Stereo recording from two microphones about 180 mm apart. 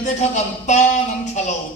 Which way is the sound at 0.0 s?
40° left (ahead or behind).